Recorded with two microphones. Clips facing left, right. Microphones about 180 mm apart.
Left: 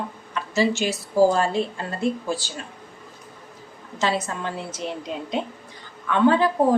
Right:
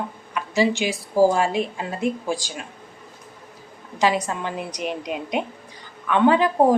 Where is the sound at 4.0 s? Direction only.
15° right (ahead or behind).